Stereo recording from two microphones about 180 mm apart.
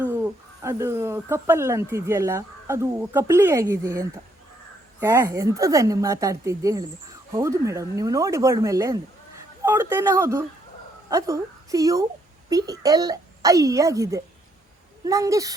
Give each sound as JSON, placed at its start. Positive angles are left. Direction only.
{"t": 0.0, "sound": "a woman's voice", "side_deg": -10}